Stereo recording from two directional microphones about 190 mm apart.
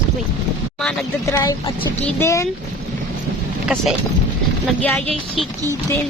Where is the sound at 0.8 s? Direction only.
Centre (ahead or behind).